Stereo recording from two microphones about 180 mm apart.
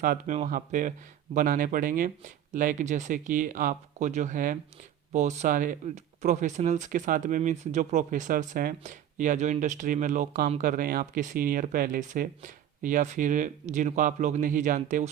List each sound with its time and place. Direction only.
0.0 s speech: 55° right (ahead or behind)